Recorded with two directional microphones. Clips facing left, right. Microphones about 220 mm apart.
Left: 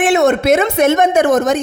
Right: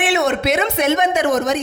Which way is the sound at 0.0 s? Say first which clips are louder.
Left 6 dB; 45° left (ahead or behind).